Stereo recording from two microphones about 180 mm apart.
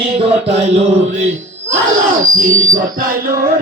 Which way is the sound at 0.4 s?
35° right (ahead or behind).